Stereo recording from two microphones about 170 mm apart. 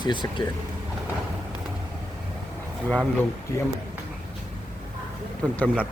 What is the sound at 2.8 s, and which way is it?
Speech, 5° left (ahead or behind).